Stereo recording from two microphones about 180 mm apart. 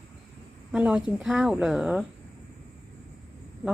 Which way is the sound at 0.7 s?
5° right (ahead or behind).